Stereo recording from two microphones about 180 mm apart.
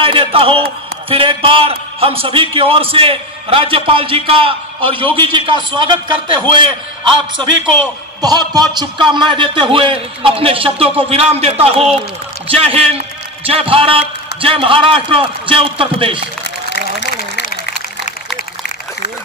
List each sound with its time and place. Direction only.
0.0 s a man's voice: 30° right (ahead or behind)
8.2 s a man's voice: 20° right (ahead or behind)